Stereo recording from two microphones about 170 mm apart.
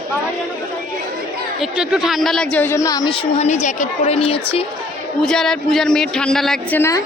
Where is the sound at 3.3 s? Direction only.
40° left (ahead or behind).